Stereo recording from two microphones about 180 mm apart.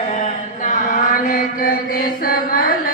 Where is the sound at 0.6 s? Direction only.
45° left (ahead or behind).